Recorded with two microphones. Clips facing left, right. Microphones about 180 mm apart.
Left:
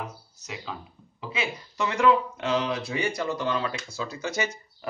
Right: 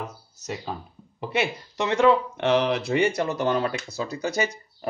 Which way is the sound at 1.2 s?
70° right (ahead or behind).